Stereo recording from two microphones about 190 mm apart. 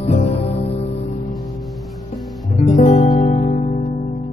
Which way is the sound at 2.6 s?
40° left (ahead or behind).